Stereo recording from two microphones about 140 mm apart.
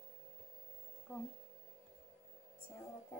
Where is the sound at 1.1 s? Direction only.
Centre (ahead or behind).